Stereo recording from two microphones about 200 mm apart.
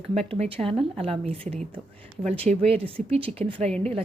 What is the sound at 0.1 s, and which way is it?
A woman's voice, 30° right (ahead or behind).